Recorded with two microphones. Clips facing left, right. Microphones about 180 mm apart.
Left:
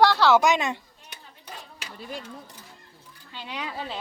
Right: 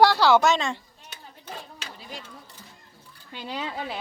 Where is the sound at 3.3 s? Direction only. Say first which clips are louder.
Right 3 dB; 40° right (ahead or behind).